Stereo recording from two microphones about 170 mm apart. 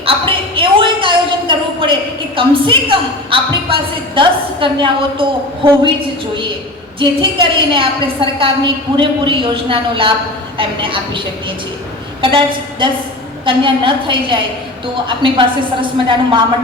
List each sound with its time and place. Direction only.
0.0 s a sound: 30° right (ahead or behind)
2.3 s a woman's voice: 30° right (ahead or behind)
7.0 s a woman's voice: 30° right (ahead or behind)
12.2 s a woman's voice: 30° right (ahead or behind)